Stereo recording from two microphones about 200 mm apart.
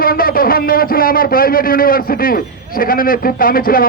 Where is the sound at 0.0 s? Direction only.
45° left (ahead or behind).